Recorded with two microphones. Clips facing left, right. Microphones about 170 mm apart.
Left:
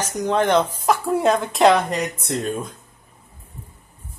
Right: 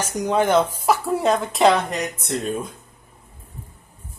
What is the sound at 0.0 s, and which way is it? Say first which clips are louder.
Speech: even; 10° right (ahead or behind).